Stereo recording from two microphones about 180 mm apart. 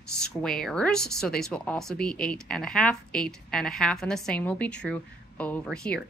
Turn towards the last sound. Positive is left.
turn(degrees=5)  # may be behind; listen again after turning